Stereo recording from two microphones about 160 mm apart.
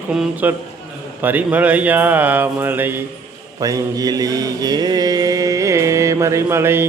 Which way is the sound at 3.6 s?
25° right (ahead or behind).